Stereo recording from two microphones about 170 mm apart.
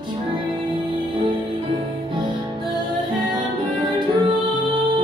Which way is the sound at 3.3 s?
30° right (ahead or behind).